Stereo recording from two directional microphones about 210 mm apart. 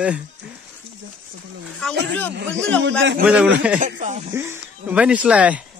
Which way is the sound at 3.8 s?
35° right (ahead or behind).